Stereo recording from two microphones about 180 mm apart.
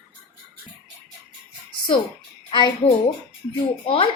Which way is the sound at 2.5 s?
25° left (ahead or behind).